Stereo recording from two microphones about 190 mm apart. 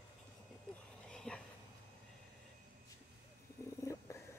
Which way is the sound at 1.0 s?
5° left (ahead or behind).